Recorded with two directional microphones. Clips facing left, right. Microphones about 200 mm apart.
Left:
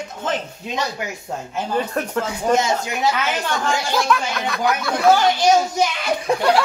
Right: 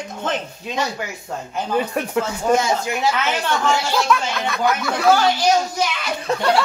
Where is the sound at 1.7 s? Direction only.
10° right (ahead or behind).